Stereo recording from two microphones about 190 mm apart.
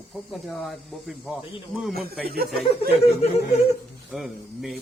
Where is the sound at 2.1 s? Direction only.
55° right (ahead or behind).